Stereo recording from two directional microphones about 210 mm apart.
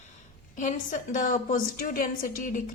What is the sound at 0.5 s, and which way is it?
A woman's voice, 35° left (ahead or behind).